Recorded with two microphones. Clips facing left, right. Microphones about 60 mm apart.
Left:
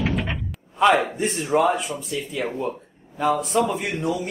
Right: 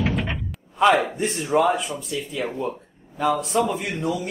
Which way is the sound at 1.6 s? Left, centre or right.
Centre.